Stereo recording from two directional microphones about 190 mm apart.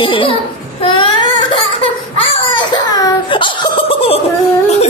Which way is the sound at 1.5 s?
30° left (ahead or behind).